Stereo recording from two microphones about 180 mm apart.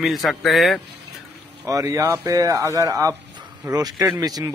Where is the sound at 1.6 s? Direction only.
15° right (ahead or behind).